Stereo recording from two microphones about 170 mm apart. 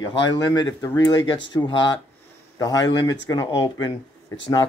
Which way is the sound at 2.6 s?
20° left (ahead or behind).